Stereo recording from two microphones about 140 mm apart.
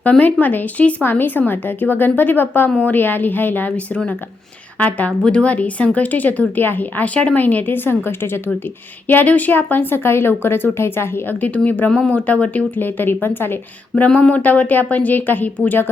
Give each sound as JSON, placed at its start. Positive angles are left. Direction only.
{"t": 0.0, "sound": "speech", "side_deg": 10}